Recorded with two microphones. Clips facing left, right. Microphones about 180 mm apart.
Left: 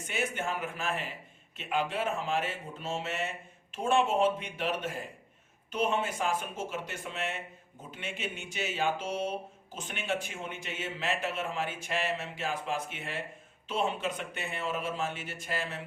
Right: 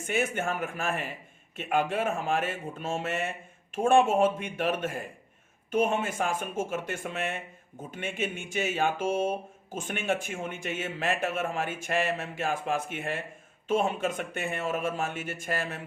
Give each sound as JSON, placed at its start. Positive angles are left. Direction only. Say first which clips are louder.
{"t": 0.0, "sound": "speech", "louder": "right 5 dB", "side_deg": -50}